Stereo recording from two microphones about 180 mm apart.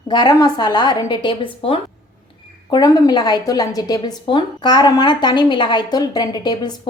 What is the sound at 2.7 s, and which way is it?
A woman's voice, 20° left (ahead or behind).